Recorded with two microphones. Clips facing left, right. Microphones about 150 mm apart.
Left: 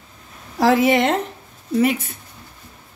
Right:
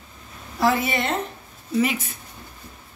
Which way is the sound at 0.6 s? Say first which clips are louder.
Left 6 dB; 90° left.